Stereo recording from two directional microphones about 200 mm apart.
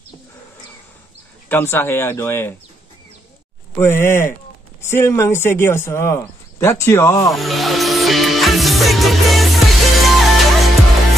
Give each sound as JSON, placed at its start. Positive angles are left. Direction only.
{"t": 1.5, "sound": "speech", "side_deg": 10}
{"t": 3.7, "sound": "speech", "side_deg": 10}
{"t": 7.3, "sound": "music", "side_deg": 0}